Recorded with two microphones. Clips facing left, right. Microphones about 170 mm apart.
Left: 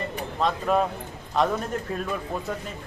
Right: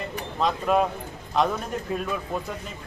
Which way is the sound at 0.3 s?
5° right (ahead or behind).